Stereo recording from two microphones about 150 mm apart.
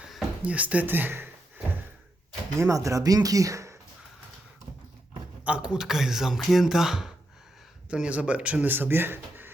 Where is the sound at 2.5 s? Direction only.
20° right (ahead or behind).